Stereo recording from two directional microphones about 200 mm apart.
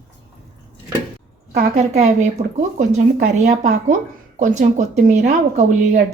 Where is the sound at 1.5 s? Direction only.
35° right (ahead or behind).